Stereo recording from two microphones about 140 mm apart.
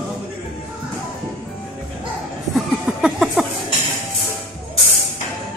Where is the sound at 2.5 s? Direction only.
5° right (ahead or behind).